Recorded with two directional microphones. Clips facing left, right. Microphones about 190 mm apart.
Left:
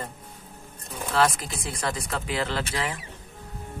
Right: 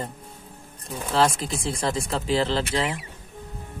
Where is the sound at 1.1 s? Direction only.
25° right (ahead or behind).